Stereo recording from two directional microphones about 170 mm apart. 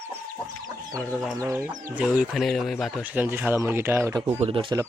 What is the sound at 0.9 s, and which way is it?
Speech, 5° left (ahead or behind).